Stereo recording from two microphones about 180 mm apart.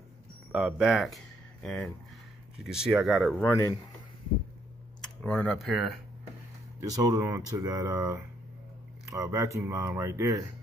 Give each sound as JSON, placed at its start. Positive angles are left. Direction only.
{"t": 0.5, "sound": "speech", "side_deg": -5}
{"t": 3.4, "sound": "speech", "side_deg": 15}
{"t": 5.0, "sound": "speech", "side_deg": 5}
{"t": 6.8, "sound": "speech", "side_deg": -20}